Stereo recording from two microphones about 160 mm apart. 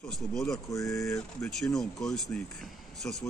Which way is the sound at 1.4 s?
Centre (ahead or behind).